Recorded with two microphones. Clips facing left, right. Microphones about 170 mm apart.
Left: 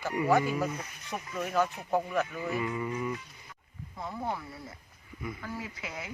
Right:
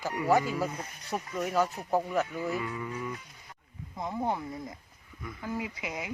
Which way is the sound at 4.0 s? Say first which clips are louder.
Right 4 dB; 20° right (ahead or behind).